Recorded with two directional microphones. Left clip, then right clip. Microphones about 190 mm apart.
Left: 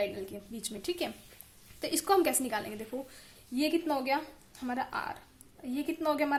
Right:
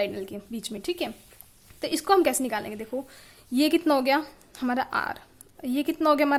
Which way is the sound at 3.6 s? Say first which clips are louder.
Right 8 dB; 35° right (ahead or behind).